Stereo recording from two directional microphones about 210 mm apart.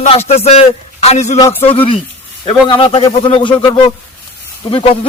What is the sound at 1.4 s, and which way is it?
Speech, 15° left (ahead or behind).